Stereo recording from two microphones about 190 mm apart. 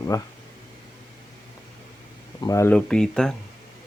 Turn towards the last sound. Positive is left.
turn(degrees=5)  # may be behind; listen again after turning